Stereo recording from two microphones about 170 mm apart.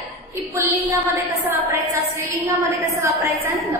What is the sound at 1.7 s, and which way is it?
A woman's voice, 20° right (ahead or behind).